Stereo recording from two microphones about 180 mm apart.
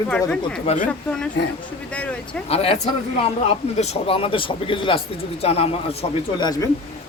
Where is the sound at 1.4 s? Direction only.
70° left (ahead or behind).